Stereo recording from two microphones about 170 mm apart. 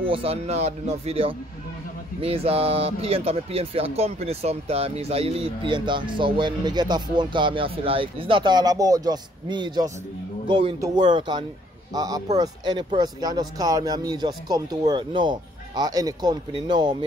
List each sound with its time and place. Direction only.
0.0 s speech: 35° right (ahead or behind)
11.1 s speech: 25° right (ahead or behind)